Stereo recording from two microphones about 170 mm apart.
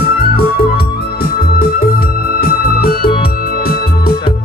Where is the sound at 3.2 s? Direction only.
60° left (ahead or behind).